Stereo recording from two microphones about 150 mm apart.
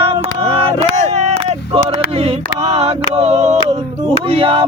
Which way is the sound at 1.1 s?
40° right (ahead or behind).